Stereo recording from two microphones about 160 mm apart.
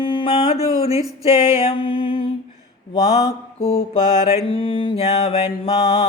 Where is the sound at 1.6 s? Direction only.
30° left (ahead or behind).